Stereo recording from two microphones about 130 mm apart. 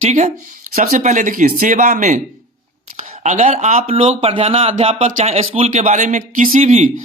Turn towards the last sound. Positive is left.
turn(degrees=-65)  # may be behind; listen again after turning